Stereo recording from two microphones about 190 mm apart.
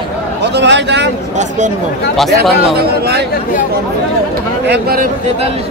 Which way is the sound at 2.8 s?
60° right (ahead or behind).